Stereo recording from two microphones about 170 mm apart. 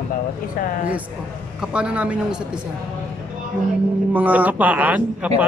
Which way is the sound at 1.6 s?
5° right (ahead or behind).